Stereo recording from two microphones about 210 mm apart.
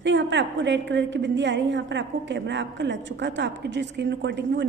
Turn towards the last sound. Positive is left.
turn(degrees=-55)  # may be behind; listen again after turning